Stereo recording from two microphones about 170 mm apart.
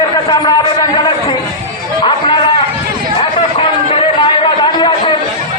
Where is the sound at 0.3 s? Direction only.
25° left (ahead or behind).